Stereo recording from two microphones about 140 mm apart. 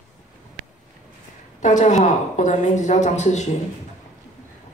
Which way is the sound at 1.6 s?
60° left (ahead or behind).